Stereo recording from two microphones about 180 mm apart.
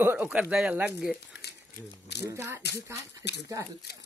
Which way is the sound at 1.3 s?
65° left (ahead or behind).